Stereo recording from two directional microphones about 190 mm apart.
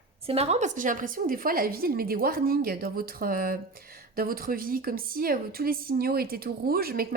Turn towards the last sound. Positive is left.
turn(degrees=-50)  # may be behind; listen again after turning